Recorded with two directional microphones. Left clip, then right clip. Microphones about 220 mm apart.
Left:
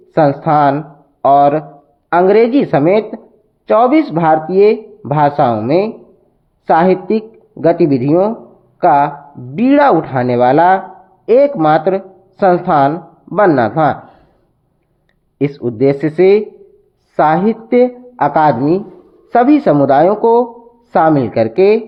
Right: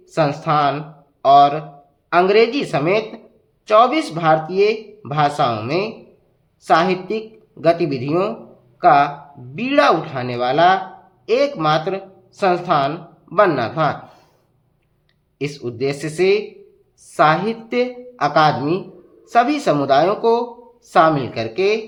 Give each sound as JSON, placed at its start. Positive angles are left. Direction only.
{"t": 0.1, "sound": "speech", "side_deg": 25}
{"t": 15.4, "sound": "speech", "side_deg": 25}